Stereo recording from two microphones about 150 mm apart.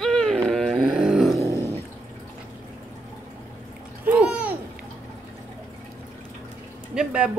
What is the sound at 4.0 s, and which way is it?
Babbling, 10° right (ahead or behind).